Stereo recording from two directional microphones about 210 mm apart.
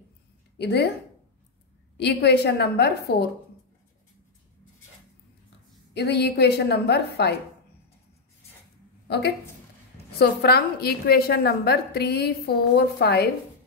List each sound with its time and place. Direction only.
0.6 s a woman's voice: 50° left (ahead or behind)
2.0 s a woman's voice: 50° left (ahead or behind)
5.9 s a woman's voice: 50° left (ahead or behind)
9.0 s a sound: 50° left (ahead or behind)
10.1 s a woman's voice: 50° left (ahead or behind)